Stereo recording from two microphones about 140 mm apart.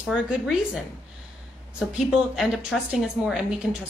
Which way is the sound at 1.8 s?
5° right (ahead or behind).